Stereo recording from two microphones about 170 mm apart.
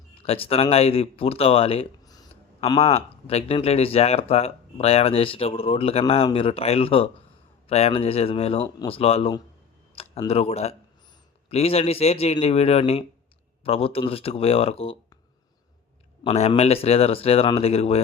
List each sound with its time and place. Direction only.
0.1 s speech: 35° left (ahead or behind)
16.2 s speech: 40° left (ahead or behind)